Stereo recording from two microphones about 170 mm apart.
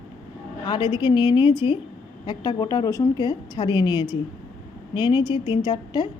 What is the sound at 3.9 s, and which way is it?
Speech, 15° right (ahead or behind).